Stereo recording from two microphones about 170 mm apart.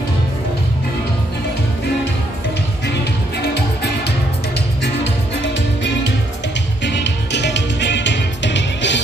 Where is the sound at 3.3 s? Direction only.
75° left (ahead or behind).